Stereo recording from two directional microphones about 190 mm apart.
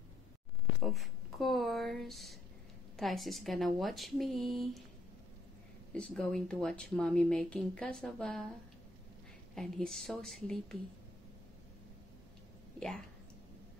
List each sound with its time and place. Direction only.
0.8 s a sound: centre (ahead or behind)
3.0 s speech: centre (ahead or behind)
5.9 s speech: 5° left (ahead or behind)
9.6 s speech: centre (ahead or behind)
12.7 s speech: 5° left (ahead or behind)